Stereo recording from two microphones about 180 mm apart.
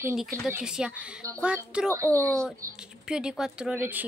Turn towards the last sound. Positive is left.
turn(degrees=-10)  # may be behind; listen again after turning